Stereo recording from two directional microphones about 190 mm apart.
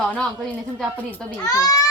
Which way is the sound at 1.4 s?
20° left (ahead or behind).